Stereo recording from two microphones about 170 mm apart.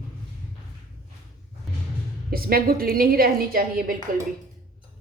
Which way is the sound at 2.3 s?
60° right (ahead or behind).